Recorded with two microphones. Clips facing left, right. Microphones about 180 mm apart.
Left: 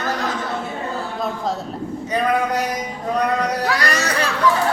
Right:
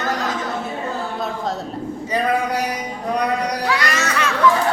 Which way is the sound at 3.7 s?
40° left (ahead or behind).